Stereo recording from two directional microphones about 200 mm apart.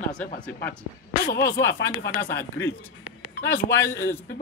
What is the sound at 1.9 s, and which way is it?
Speech, 50° left (ahead or behind).